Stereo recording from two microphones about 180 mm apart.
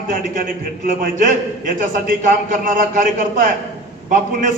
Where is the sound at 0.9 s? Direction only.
50° right (ahead or behind).